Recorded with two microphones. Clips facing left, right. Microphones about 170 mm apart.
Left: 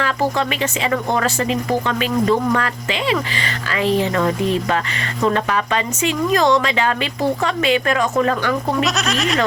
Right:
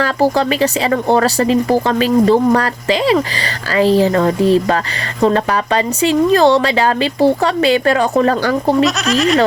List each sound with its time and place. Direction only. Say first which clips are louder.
0.0 s speech: right 6 dB; 35° right (ahead or behind)
8.8 s speech: right 6 dB; centre (ahead or behind)